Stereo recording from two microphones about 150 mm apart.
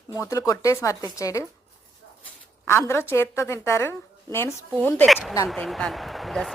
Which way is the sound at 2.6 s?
15° left (ahead or behind).